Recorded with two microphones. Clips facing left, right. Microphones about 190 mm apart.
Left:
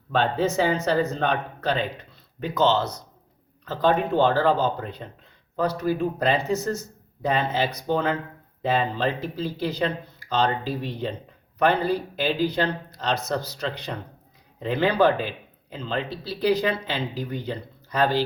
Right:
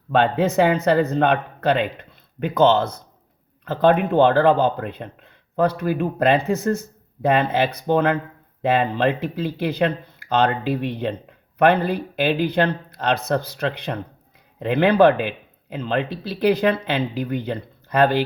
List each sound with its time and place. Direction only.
0.1 s speech: 60° right (ahead or behind)